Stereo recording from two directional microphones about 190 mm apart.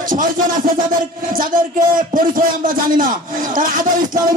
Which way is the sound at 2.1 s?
50° right (ahead or behind).